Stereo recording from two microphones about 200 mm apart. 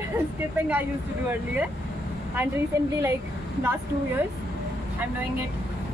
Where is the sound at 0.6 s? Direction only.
10° right (ahead or behind).